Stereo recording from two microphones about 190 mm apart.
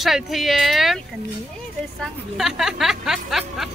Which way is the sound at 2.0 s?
Centre (ahead or behind).